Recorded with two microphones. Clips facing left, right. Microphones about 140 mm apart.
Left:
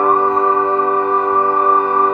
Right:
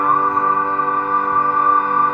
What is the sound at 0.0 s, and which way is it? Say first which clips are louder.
Music: left 4 dB; 25° left (ahead or behind).